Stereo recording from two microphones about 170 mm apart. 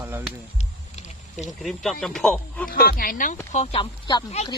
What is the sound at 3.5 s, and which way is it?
Speech, 35° left (ahead or behind).